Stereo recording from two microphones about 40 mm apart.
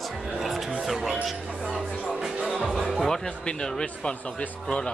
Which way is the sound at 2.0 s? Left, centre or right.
Centre.